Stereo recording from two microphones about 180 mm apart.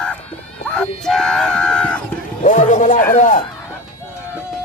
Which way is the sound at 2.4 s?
45° left (ahead or behind).